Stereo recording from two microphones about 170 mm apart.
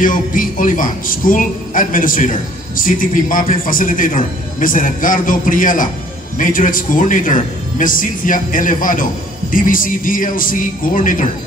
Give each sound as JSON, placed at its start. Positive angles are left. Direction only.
{"t": 0.0, "sound": "a man's voice", "side_deg": 50}